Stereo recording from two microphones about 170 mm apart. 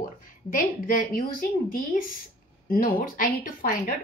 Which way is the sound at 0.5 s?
55° left (ahead or behind).